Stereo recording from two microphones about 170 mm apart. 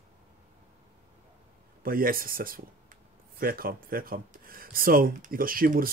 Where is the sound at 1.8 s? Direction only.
60° right (ahead or behind).